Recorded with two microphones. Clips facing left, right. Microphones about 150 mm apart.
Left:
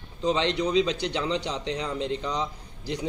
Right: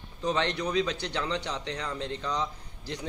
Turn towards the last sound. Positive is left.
turn(degrees=15)  # may be behind; listen again after turning